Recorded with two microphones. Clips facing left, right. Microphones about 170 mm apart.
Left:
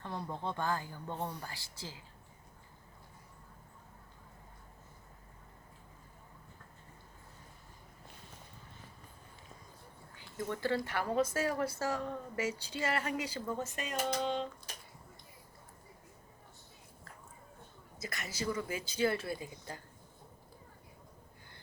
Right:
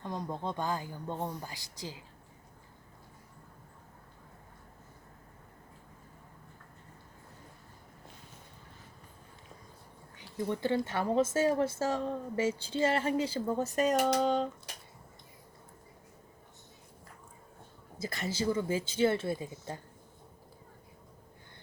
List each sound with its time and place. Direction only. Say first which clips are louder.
0.0 s speech: right 3 dB; 15° right (ahead or behind)
10.5 s speech: right 3 dB; 20° right (ahead or behind); by 13.9 s 40° right (ahead or behind)
13.9 s typewriter: right 5 dB; 65° right (ahead or behind)
14.2 s typewriter: right 6 dB; 40° right (ahead or behind)
18.0 s speech: right 6 dB; 30° right (ahead or behind)